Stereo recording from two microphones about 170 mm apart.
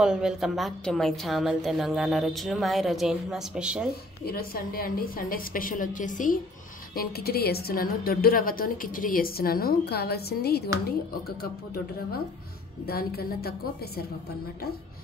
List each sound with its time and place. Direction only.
0.0 s a woman's voice: 5° right (ahead or behind)
4.3 s a woman's voice: 60° left (ahead or behind)
7.0 s a woman's voice: 65° left (ahead or behind)